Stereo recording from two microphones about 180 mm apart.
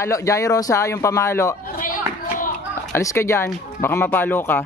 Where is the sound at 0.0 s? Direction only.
15° left (ahead or behind).